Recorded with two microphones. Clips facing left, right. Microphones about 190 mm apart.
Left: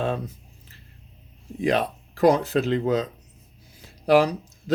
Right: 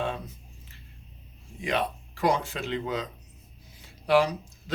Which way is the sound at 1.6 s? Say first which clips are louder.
Left 6 dB; 40° left (ahead or behind).